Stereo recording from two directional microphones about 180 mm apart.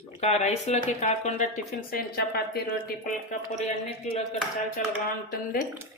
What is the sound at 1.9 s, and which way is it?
Speech, 60° left (ahead or behind).